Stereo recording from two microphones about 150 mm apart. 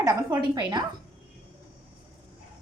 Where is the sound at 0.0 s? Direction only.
25° right (ahead or behind).